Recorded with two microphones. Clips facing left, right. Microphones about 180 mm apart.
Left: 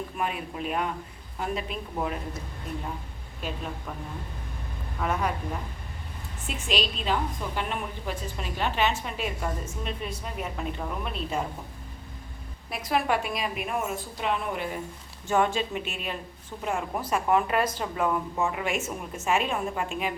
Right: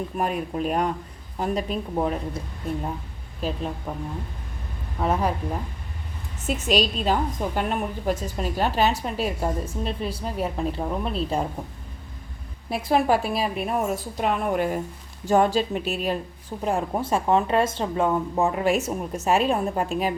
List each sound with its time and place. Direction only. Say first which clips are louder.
0.2 s a woman's voice: right 6 dB; 40° right (ahead or behind)
3.4 s a woman's voice: right 6 dB; 35° right (ahead or behind)
4.9 s a woman's voice: right 5 dB; 30° right (ahead or behind)
6.5 s a woman's voice: right 7 dB; 45° right (ahead or behind)
12.7 s a woman's voice: right 6 dB; 30° right (ahead or behind); by 14.8 s 45° right (ahead or behind)
15.2 s a woman's voice: right 5 dB; 35° right (ahead or behind)